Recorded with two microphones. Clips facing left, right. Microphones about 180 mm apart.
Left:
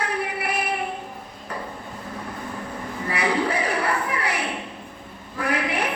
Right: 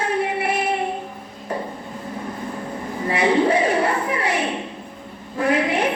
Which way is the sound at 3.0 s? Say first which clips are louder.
Right 6 dB; 25° right (ahead or behind).